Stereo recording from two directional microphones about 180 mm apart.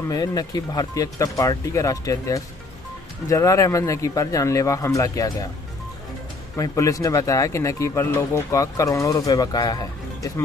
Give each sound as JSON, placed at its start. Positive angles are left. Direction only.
{"t": 0.1, "sound": "speech", "side_deg": 20}
{"t": 6.5, "sound": "speech", "side_deg": 15}